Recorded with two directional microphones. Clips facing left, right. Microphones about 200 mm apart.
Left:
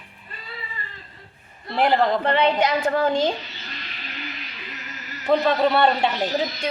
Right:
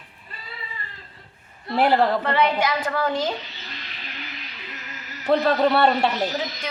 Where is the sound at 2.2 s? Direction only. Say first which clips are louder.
Left 2 dB; 25° left (ahead or behind).